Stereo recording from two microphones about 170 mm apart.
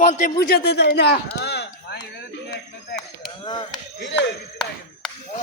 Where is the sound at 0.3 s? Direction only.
65° left (ahead or behind).